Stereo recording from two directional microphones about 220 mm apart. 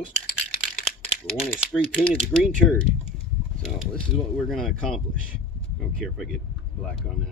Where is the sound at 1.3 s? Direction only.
25° left (ahead or behind).